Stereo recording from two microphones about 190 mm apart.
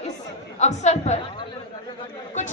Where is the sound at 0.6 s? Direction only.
35° left (ahead or behind).